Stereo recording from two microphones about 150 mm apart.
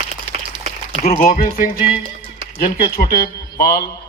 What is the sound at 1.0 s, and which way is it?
Speech, 55° left (ahead or behind).